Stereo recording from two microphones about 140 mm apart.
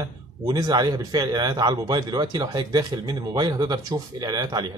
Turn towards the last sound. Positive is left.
turn(degrees=-30)  # may be behind; listen again after turning